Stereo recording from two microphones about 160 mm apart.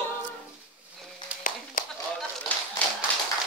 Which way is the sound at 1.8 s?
60° left (ahead or behind).